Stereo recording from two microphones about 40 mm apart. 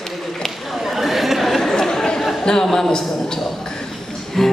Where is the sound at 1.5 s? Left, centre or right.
Centre.